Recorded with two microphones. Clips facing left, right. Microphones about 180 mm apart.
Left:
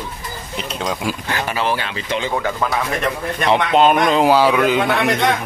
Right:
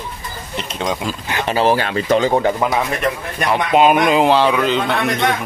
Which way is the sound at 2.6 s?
20° right (ahead or behind).